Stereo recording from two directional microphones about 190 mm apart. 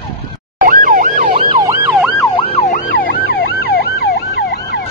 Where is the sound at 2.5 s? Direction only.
40° left (ahead or behind); by 4.8 s 60° left (ahead or behind).